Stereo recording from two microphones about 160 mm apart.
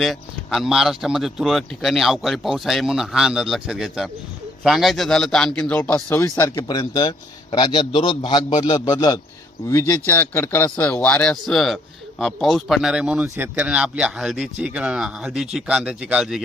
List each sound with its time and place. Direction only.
0.0 s a man's voice: centre (ahead or behind)